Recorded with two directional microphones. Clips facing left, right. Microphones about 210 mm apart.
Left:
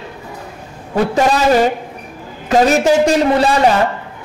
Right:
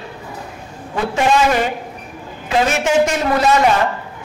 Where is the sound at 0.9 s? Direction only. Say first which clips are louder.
Left 2 dB; 35° left (ahead or behind).